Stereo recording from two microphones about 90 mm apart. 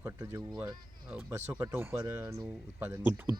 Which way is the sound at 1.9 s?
50° right (ahead or behind).